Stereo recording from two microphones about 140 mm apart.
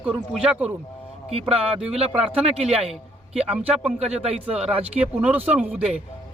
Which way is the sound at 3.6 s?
5° right (ahead or behind).